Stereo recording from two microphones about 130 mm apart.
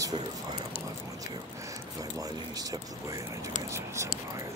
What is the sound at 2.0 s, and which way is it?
Speech, 25° right (ahead or behind).